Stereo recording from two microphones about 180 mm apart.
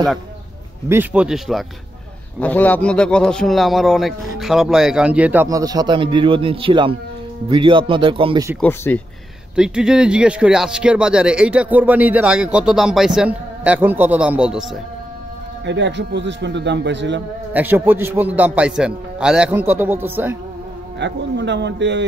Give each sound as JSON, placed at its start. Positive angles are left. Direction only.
{"t": 0.8, "sound": "speech", "side_deg": -10}
{"t": 2.4, "sound": "a man's voice", "side_deg": 10}
{"t": 8.5, "sound": "speech", "side_deg": 10}
{"t": 9.6, "sound": "speech", "side_deg": -5}
{"t": 15.6, "sound": "speech", "side_deg": -80}
{"t": 17.5, "sound": "a man's voice", "side_deg": -10}
{"t": 21.0, "sound": "speech", "side_deg": -75}